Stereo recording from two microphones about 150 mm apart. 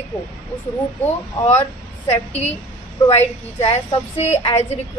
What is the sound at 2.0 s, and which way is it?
A woman's voice, 45° left (ahead or behind).